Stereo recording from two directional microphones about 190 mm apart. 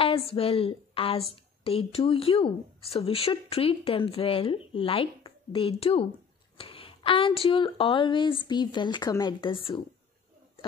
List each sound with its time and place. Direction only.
0.0 s a woman's voice: 30° left (ahead or behind)